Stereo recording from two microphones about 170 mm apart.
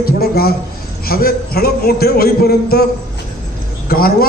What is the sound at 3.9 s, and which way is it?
Speech, 60° left (ahead or behind).